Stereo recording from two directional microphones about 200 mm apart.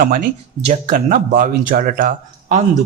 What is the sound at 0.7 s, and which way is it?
Speech, 40° right (ahead or behind).